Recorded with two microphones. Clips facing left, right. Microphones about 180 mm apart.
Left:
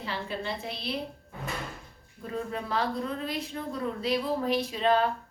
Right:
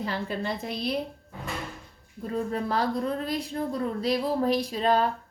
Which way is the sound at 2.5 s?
40° right (ahead or behind).